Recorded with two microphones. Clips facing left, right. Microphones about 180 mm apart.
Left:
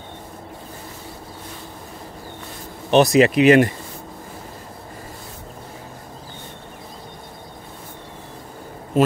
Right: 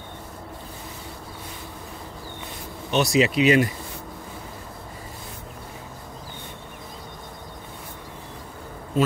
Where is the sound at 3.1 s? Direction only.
55° left (ahead or behind).